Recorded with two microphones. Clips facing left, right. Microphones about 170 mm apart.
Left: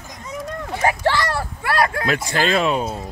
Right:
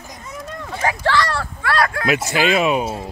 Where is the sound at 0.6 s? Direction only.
15° left (ahead or behind).